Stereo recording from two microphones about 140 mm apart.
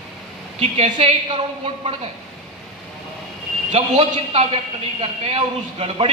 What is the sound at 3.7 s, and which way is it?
A man's voice, 45° right (ahead or behind).